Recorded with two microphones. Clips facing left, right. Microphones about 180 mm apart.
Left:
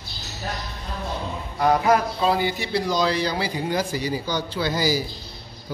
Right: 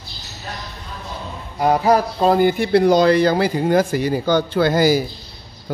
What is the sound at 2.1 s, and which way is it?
Speech, 50° right (ahead or behind).